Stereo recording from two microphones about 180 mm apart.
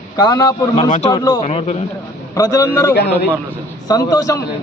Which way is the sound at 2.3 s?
20° left (ahead or behind).